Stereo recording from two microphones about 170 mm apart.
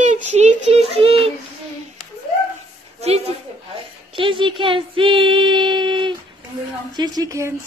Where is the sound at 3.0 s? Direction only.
40° right (ahead or behind).